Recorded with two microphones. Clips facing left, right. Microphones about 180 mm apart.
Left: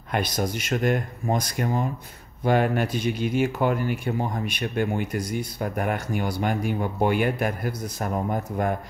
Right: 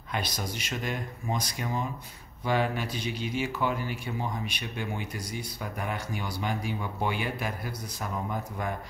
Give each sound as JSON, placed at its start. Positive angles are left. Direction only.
{"t": 0.1, "sound": "speech", "side_deg": 50}